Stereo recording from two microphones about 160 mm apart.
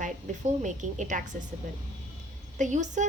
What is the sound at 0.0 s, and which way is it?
A woman's voice, 50° right (ahead or behind).